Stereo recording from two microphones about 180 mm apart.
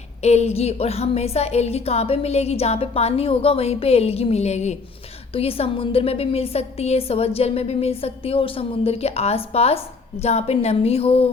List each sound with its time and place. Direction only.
0.2 s a woman's voice: 35° left (ahead or behind)